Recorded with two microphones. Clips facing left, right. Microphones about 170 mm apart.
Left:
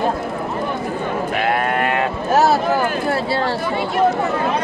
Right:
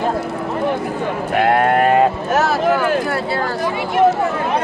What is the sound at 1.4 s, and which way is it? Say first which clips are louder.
Sheep: right 7 dB; 50° right (ahead or behind).